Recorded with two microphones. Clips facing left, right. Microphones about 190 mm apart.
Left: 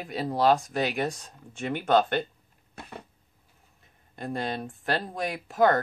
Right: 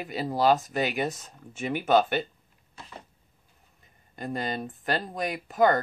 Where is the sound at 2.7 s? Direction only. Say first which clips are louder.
Left 3 dB; 55° left (ahead or behind).